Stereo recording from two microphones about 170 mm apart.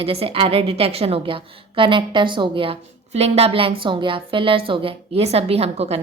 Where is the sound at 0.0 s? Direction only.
35° right (ahead or behind).